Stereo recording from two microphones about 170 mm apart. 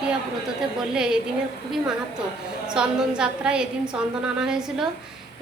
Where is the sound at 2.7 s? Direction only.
5° right (ahead or behind).